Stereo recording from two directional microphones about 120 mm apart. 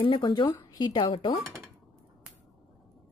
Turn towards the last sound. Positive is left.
turn(degrees=40)  # may be behind; listen again after turning